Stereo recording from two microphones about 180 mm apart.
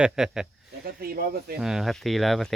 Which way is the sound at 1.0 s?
55° right (ahead or behind).